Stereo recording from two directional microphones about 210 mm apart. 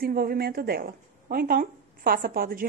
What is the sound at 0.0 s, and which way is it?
A woman's voice, 45° right (ahead or behind).